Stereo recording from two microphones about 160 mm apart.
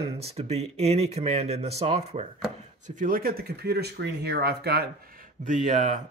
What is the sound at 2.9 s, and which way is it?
Speech, 55° right (ahead or behind).